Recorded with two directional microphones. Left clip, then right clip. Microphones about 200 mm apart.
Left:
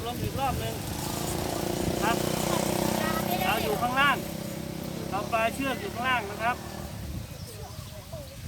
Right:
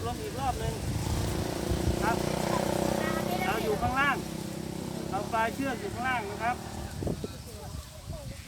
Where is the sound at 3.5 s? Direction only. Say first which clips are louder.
Left 2 dB; 5° left (ahead or behind).